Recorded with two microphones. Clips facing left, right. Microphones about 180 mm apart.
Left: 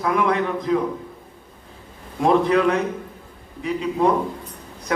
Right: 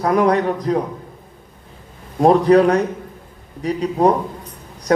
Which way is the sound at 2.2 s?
40° right (ahead or behind).